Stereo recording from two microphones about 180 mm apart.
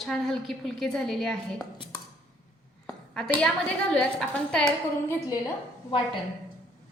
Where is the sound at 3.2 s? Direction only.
5° left (ahead or behind).